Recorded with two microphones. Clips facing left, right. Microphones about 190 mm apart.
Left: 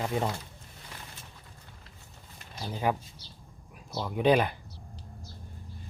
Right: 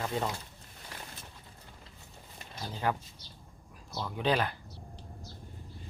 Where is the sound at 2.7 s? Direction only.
15° left (ahead or behind).